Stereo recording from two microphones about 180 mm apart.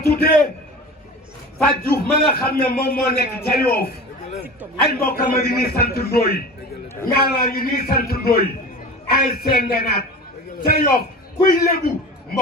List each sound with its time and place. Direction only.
0.0 s a man's voice: 60° left (ahead or behind)
1.6 s a man's voice: 55° left (ahead or behind)
4.8 s a man's voice: 55° left (ahead or behind)